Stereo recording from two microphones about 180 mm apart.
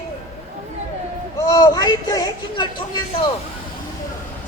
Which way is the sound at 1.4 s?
20° left (ahead or behind).